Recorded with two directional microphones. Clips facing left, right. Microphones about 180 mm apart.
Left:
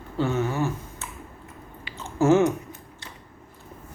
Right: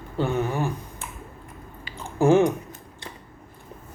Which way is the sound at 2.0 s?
15° right (ahead or behind).